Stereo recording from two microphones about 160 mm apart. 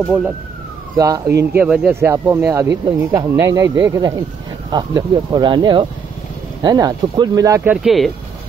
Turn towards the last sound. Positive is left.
turn(degrees=-10)  # may be behind; listen again after turning